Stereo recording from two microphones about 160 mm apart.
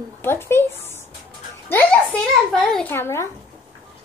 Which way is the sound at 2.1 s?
Centre (ahead or behind).